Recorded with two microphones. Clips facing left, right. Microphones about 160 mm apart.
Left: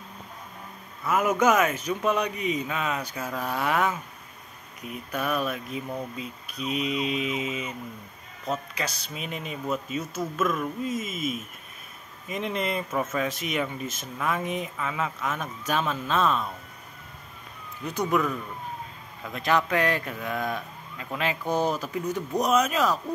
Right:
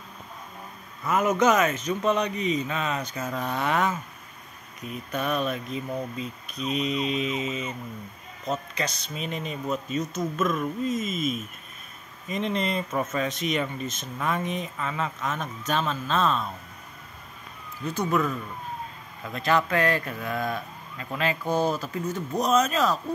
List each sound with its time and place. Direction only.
1.0 s a man's voice: 10° left (ahead or behind)
17.8 s a man's voice: 15° left (ahead or behind)
19.3 s a man's voice: 15° left (ahead or behind)